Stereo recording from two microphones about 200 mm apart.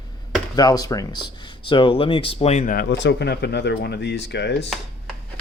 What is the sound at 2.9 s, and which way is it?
Speech, 60° left (ahead or behind).